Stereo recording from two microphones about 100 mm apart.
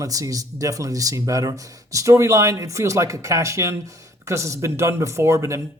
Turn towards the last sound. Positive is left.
turn(degrees=-30)  # may be behind; listen again after turning